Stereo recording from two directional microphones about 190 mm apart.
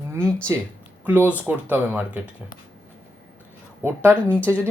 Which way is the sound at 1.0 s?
10° right (ahead or behind).